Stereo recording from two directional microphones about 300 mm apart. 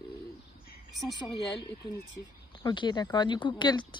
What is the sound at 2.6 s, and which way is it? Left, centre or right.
Speech, centre.